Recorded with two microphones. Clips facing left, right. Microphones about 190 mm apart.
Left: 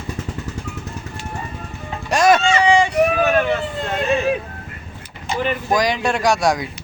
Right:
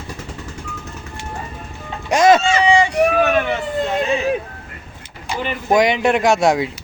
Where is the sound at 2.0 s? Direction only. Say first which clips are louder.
Right 2 dB; 20° right (ahead or behind).